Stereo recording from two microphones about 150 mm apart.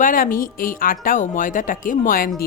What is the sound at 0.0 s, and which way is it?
Speech, 65° left (ahead or behind).